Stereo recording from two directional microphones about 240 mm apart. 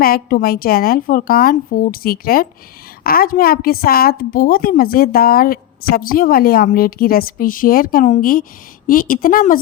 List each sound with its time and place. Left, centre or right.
0.0 s a woman's voice: left